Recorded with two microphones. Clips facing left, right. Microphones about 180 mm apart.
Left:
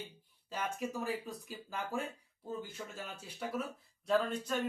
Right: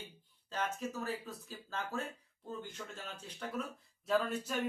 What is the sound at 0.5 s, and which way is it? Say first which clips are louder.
Speech: even; 10° left (ahead or behind).